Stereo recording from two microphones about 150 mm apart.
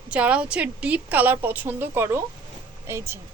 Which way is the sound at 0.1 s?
10° right (ahead or behind).